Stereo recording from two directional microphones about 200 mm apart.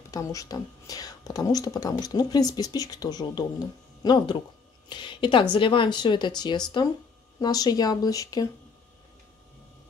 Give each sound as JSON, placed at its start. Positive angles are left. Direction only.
{"t": 0.1, "sound": "speech", "side_deg": 15}